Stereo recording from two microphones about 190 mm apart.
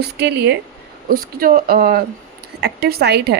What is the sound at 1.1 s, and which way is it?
A woman's voice, 50° right (ahead or behind).